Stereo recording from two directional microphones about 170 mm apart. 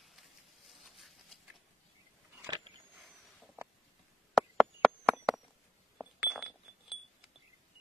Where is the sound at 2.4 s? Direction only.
25° right (ahead or behind).